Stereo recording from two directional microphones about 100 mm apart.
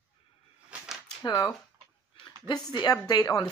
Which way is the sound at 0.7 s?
5° right (ahead or behind).